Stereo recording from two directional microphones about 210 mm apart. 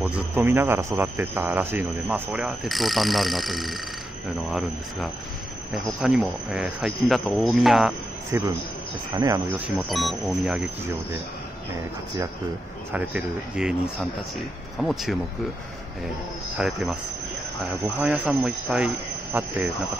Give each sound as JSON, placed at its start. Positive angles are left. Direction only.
{"t": 0.0, "sound": "speech", "side_deg": -10}
{"t": 8.3, "sound": "speech", "side_deg": -15}
{"t": 9.8, "sound": "speech", "side_deg": 0}
{"t": 12.9, "sound": "speech", "side_deg": -5}
{"t": 16.5, "sound": "speech", "side_deg": -5}